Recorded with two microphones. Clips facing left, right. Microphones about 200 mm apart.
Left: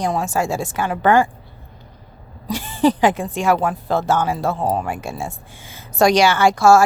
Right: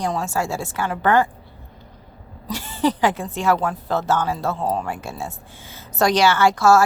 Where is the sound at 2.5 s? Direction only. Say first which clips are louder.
Left 4 dB; 15° left (ahead or behind).